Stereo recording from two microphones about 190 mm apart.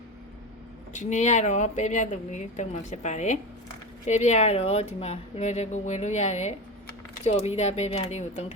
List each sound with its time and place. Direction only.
0.9 s speech: 40° left (ahead or behind)